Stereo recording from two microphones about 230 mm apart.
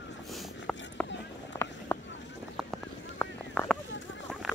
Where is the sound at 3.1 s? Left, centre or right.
Centre.